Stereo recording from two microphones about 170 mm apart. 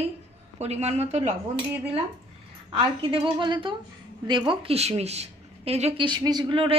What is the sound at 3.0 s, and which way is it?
A woman's voice, 30° right (ahead or behind).